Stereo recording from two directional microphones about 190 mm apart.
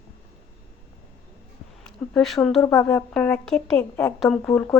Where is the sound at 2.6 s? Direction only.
15° left (ahead or behind).